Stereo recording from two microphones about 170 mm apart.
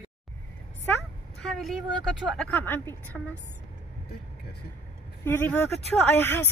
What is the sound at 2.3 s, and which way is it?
Speech, 10° left (ahead or behind).